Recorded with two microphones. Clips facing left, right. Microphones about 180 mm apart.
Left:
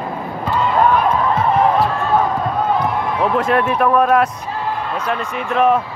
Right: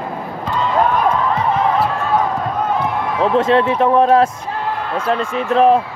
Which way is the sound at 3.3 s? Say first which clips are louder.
Right 4 dB; 25° right (ahead or behind).